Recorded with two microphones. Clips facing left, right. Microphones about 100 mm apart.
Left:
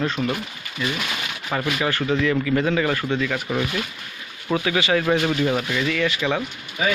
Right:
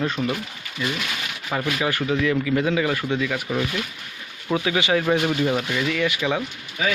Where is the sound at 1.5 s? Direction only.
10° left (ahead or behind).